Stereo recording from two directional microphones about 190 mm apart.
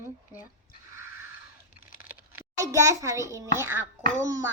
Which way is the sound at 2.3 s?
15° right (ahead or behind).